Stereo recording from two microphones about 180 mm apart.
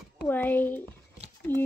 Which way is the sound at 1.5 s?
10° left (ahead or behind).